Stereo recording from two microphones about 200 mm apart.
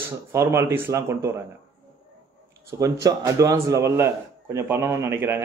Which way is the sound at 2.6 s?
15° right (ahead or behind).